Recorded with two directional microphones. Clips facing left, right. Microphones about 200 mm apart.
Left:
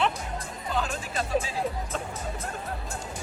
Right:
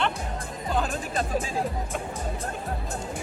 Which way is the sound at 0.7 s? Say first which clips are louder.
Right 3 dB; 50° right (ahead or behind).